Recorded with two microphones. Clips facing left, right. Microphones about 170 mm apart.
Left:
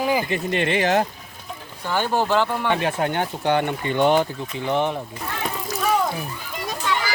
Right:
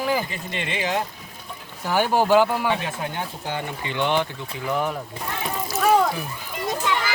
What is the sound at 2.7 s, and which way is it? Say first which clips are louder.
Speech: left 5 dB; 65° left (ahead or behind).